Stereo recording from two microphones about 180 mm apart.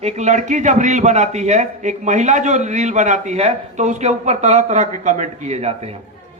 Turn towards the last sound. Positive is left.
turn(degrees=-35)  # may be behind; listen again after turning